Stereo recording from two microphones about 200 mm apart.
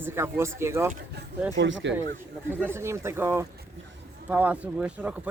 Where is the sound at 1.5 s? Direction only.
65° right (ahead or behind).